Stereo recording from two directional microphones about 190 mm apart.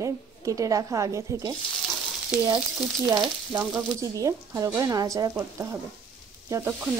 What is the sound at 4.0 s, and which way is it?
A woman's voice, 15° right (ahead or behind).